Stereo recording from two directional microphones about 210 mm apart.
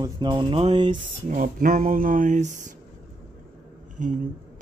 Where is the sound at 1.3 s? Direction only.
40° right (ahead or behind).